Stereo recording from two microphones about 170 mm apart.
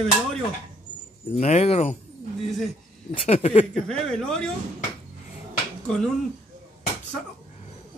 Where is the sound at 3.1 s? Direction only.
35° left (ahead or behind).